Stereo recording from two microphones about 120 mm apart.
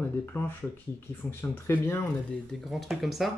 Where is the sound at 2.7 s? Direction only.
Centre (ahead or behind).